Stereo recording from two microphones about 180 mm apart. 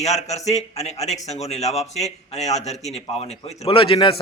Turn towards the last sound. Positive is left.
turn(degrees=30)  # may be behind; listen again after turning